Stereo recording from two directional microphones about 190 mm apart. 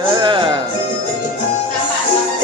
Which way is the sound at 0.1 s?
25° right (ahead or behind).